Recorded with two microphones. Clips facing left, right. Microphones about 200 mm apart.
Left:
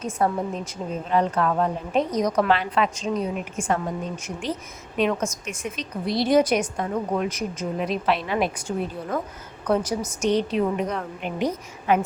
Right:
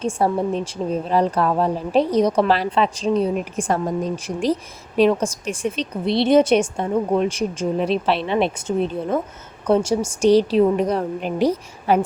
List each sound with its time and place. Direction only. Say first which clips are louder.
0.0 s a woman's voice: right 4 dB; 30° right (ahead or behind)